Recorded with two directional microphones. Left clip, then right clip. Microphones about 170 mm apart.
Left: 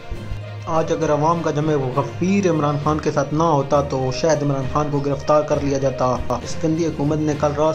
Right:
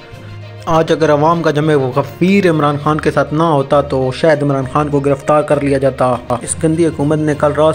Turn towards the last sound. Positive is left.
turn(degrees=-30)  # may be behind; listen again after turning